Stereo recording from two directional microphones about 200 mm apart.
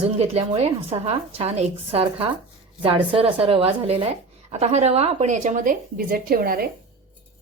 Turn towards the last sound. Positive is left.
turn(degrees=-45)  # may be behind; listen again after turning